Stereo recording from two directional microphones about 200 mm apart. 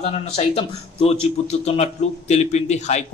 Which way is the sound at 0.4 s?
30° left (ahead or behind).